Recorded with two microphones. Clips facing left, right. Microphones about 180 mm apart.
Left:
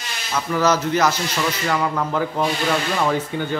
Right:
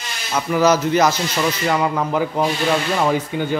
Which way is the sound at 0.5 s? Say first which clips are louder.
Right 3 dB; 15° right (ahead or behind).